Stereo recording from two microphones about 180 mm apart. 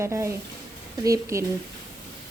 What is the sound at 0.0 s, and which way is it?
Speech, 15° right (ahead or behind).